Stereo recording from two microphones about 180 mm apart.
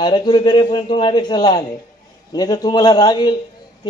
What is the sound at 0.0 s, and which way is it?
A man's voice, 25° left (ahead or behind).